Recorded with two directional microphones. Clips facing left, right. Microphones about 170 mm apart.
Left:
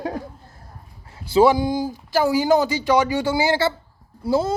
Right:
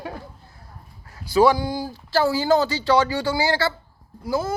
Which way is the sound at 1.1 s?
25° left (ahead or behind).